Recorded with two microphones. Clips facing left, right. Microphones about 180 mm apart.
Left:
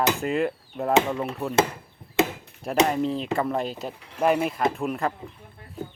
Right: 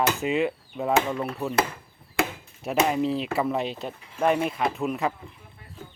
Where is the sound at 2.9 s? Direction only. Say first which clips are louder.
Even; 5° right (ahead or behind).